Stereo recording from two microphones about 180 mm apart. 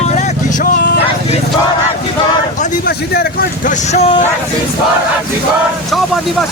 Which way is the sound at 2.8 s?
60° left (ahead or behind).